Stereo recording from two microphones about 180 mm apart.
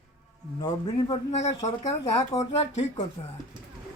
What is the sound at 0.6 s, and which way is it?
Speech, 30° left (ahead or behind).